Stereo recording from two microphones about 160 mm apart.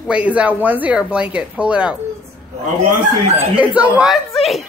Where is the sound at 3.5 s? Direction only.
10° right (ahead or behind).